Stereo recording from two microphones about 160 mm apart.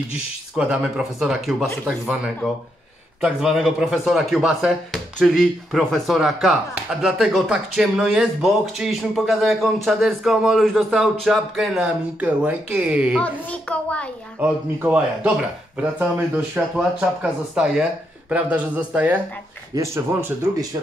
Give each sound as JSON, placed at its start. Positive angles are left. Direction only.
{"t": 0.6, "sound": "speech", "side_deg": -5}
{"t": 13.2, "sound": "a child's voice", "side_deg": 10}
{"t": 14.4, "sound": "speech", "side_deg": -10}
{"t": 16.5, "sound": "speech", "side_deg": -10}